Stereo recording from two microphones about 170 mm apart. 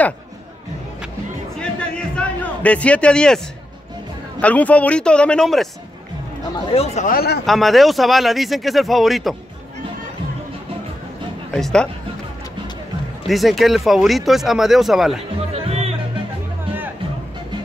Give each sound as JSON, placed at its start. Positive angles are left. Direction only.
{"t": 1.6, "sound": "a sound", "side_deg": 5}
{"t": 4.4, "sound": "speech", "side_deg": 10}
{"t": 6.7, "sound": "speech", "side_deg": 35}
{"t": 7.1, "sound": "speech", "side_deg": 65}
{"t": 7.4, "sound": "speech", "side_deg": 0}
{"t": 11.5, "sound": "speech", "side_deg": 5}
{"t": 13.3, "sound": "speech", "side_deg": 0}
{"t": 15.5, "sound": "music", "side_deg": -35}